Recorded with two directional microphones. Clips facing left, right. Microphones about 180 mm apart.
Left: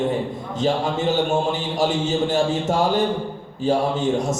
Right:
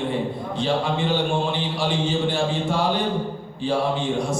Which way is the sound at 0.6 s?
45° left (ahead or behind).